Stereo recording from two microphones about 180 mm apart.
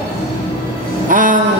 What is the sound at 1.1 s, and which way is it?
Speech, 45° right (ahead or behind).